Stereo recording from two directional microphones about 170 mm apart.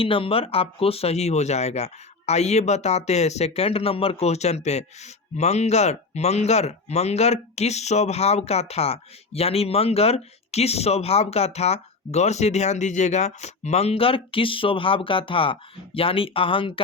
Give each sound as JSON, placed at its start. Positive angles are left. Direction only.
{"t": 0.0, "sound": "speech", "side_deg": 30}